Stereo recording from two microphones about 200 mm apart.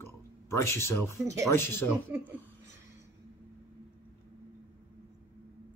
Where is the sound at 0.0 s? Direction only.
15° left (ahead or behind).